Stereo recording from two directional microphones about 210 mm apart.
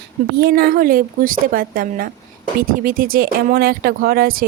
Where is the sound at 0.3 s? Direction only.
50° right (ahead or behind).